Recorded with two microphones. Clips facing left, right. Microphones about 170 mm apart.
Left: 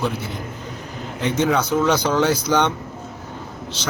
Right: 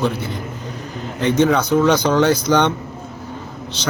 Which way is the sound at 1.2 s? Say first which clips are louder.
Right 4 dB; 5° left (ahead or behind).